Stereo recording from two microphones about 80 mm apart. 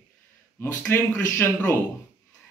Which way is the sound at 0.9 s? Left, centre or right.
Left.